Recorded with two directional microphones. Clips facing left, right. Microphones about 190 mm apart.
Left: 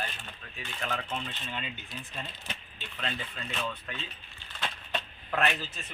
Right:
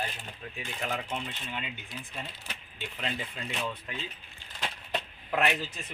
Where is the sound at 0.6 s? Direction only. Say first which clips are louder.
Right 1 dB; 15° right (ahead or behind).